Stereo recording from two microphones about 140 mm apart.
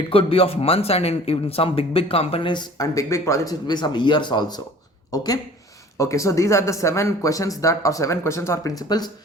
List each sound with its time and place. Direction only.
0.1 s a man's voice: 40° left (ahead or behind)